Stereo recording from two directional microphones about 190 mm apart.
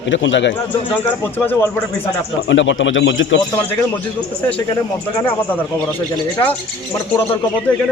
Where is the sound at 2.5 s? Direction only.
75° left (ahead or behind).